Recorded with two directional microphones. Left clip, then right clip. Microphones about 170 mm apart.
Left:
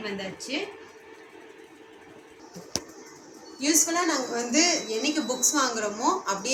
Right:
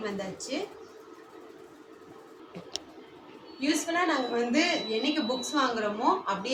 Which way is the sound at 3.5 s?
10° left (ahead or behind).